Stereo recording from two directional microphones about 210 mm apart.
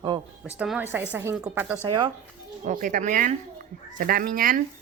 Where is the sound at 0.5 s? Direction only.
5° right (ahead or behind).